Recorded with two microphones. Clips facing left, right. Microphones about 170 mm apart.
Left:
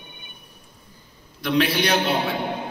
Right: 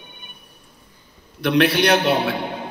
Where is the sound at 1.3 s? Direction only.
65° right (ahead or behind).